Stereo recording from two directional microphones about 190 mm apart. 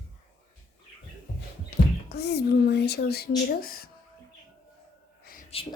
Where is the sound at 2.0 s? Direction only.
60° left (ahead or behind).